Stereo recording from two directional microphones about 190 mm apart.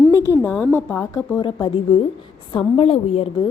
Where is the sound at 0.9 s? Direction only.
15° left (ahead or behind); by 3.5 s 30° left (ahead or behind).